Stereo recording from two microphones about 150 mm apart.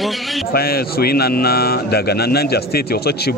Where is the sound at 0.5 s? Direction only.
90° left.